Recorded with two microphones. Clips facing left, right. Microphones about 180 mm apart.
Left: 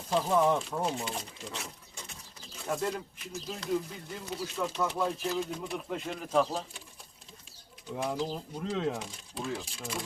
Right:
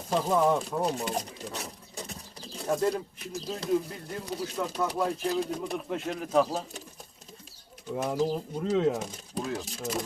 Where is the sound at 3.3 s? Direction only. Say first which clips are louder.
Right 4 dB; 35° right (ahead or behind).